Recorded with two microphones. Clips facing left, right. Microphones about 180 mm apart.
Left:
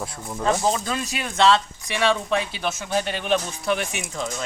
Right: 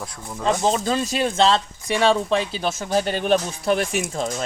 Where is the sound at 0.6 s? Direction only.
25° right (ahead or behind).